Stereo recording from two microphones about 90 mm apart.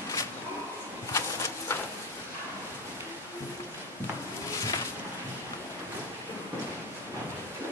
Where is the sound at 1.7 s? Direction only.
30° left (ahead or behind).